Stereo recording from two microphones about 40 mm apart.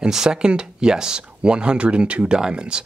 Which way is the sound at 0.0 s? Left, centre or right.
Centre.